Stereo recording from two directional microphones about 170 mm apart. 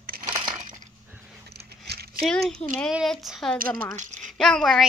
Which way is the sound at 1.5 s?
70° right (ahead or behind).